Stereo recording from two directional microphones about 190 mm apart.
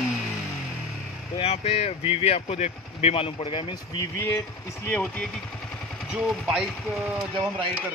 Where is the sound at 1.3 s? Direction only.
30° left (ahead or behind).